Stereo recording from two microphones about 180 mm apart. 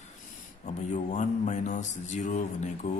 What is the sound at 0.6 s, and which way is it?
A man's voice, 40° left (ahead or behind).